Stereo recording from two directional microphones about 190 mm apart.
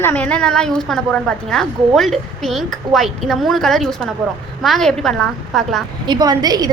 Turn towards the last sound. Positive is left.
turn(degrees=-20)  # may be behind; listen again after turning